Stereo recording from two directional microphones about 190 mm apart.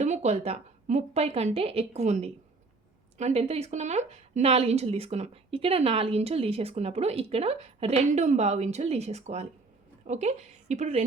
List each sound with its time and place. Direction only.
0.0 s a woman's voice: 35° right (ahead or behind)